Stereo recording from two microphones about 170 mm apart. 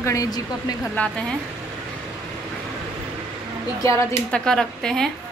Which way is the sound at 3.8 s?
20° left (ahead or behind).